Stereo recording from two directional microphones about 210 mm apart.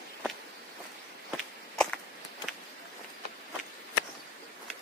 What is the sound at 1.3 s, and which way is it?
Walk, 5° left (ahead or behind).